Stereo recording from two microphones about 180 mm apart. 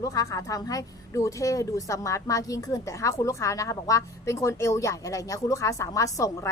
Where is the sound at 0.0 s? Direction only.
20° left (ahead or behind).